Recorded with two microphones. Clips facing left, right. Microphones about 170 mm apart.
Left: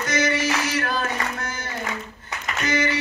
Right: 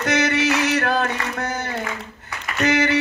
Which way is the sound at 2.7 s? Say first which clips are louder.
Right 4 dB; 65° right (ahead or behind).